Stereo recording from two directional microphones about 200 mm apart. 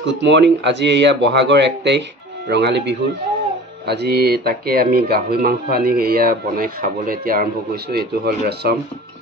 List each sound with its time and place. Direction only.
0.0 s speech: 60° right (ahead or behind)